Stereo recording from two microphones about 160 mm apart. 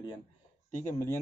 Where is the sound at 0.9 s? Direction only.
15° left (ahead or behind).